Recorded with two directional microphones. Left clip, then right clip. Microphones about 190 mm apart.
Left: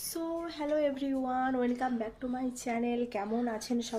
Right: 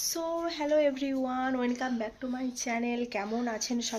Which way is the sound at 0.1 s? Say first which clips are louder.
Right 1 dB; 10° right (ahead or behind).